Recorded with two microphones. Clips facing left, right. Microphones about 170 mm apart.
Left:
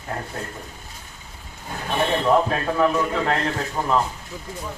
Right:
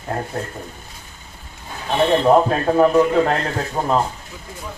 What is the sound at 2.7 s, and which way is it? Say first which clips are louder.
Speech: right 9 dB; 50° right (ahead or behind).